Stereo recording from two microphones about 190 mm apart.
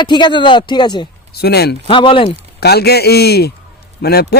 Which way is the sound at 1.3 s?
55° left (ahead or behind).